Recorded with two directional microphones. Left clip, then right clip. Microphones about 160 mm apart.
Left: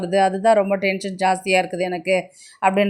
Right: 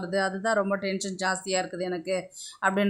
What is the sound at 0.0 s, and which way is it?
Speech, 15° left (ahead or behind).